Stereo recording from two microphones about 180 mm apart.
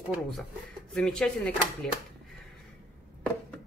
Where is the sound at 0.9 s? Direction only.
5° left (ahead or behind).